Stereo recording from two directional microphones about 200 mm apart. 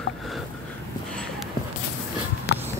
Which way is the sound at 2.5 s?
55° left (ahead or behind).